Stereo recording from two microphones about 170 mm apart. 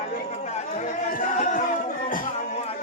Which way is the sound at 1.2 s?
50° left (ahead or behind).